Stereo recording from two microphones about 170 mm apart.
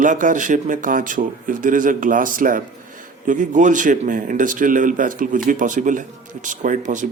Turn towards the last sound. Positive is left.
turn(degrees=-50)  # may be behind; listen again after turning